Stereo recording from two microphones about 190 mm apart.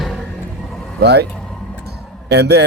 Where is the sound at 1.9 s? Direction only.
60° right (ahead or behind).